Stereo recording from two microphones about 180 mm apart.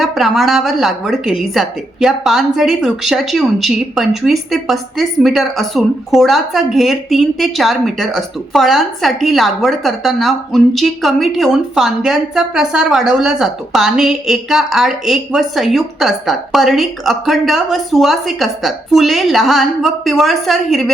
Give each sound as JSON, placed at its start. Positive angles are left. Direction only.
{"t": 0.0, "sound": "a woman's voice", "side_deg": 0}